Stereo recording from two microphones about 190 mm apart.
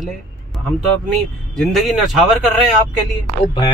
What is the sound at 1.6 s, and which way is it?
Speech, centre (ahead or behind).